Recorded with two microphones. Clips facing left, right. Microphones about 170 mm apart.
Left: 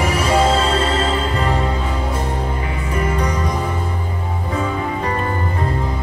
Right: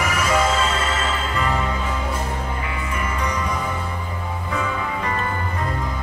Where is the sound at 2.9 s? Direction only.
35° left (ahead or behind).